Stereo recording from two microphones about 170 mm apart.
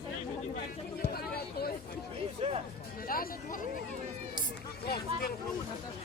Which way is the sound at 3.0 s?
55° left (ahead or behind).